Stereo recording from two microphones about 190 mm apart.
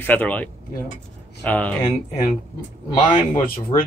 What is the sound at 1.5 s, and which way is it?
Speech, 10° left (ahead or behind).